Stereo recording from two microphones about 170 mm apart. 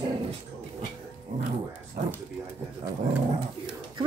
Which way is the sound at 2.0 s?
65° right (ahead or behind).